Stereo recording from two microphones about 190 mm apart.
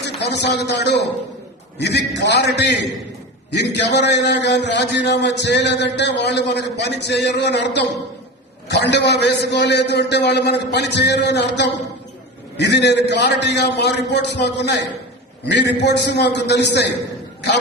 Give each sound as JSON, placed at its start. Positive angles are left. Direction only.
{"t": 0.0, "sound": "a man's voice", "side_deg": 65}